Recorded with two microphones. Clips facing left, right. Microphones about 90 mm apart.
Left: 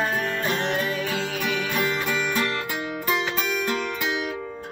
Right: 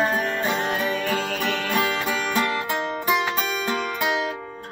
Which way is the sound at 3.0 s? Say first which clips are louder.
Right 1 dB; 10° right (ahead or behind).